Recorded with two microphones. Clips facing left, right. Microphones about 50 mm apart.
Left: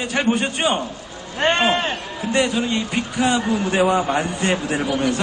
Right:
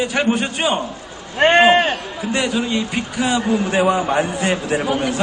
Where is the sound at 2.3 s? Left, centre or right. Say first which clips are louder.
Even; centre.